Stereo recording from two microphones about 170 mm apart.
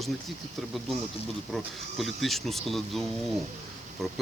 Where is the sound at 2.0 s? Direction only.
Centre (ahead or behind).